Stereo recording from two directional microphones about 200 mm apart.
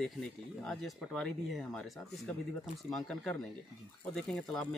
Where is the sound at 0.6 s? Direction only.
5° left (ahead or behind).